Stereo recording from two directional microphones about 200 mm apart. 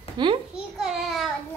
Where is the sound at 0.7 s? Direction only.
Centre (ahead or behind).